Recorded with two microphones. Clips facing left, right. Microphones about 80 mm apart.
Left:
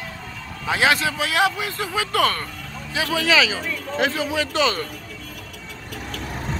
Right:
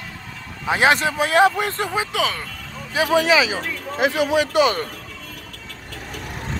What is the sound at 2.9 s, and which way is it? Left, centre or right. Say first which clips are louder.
A man's voice: right 3 dB; right.